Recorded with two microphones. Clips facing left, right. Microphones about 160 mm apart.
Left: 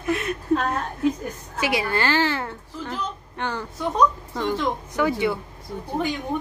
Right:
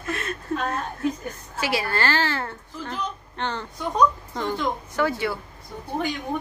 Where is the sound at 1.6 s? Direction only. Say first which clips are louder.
Left 2 dB; 20° left (ahead or behind); by 4.6 s centre (ahead or behind).